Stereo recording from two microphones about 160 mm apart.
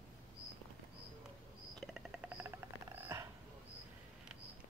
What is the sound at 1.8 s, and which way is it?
Cricket, 5° right (ahead or behind).